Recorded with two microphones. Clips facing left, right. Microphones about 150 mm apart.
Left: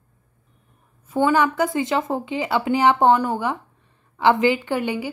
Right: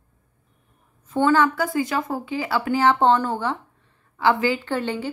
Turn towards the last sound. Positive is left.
turn(degrees=10)  # may be behind; listen again after turning